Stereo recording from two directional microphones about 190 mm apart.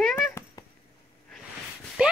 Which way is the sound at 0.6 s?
15° left (ahead or behind).